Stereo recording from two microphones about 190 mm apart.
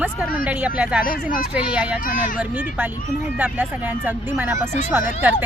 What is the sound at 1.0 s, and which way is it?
Speech, 50° left (ahead or behind).